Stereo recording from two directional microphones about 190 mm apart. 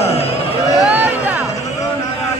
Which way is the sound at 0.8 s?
10° right (ahead or behind).